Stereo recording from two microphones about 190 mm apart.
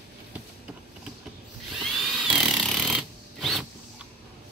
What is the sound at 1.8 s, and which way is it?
Tools, centre (ahead or behind).